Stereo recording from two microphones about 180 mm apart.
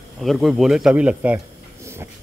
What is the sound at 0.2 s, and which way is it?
Speech, centre (ahead or behind).